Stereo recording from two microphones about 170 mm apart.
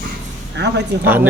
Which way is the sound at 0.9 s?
85° right.